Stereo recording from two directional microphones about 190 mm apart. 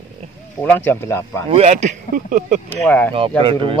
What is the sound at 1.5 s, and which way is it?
Speech, 35° right (ahead or behind).